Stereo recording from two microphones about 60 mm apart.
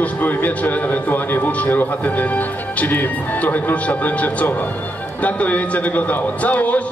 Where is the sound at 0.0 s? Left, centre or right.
Left.